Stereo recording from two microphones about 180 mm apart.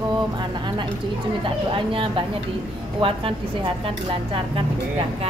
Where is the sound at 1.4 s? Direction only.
30° right (ahead or behind).